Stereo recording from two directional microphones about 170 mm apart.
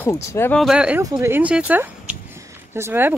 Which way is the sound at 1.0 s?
15° right (ahead or behind).